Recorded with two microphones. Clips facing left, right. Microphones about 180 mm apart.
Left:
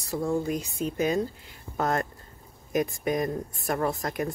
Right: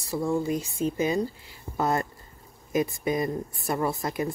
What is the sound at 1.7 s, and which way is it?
Speech, 5° right (ahead or behind).